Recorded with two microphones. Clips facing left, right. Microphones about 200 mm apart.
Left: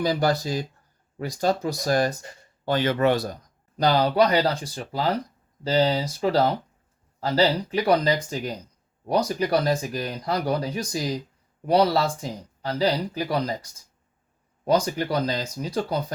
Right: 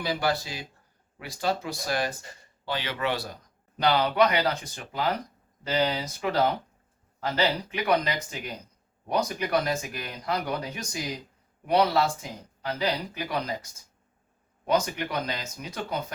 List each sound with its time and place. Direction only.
0.0 s speech: 40° left (ahead or behind)